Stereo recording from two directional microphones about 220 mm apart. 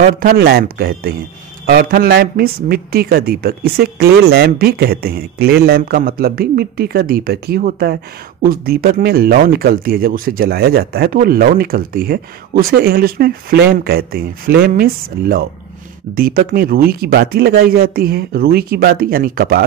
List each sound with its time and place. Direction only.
0.0 s speech: 40° right (ahead or behind)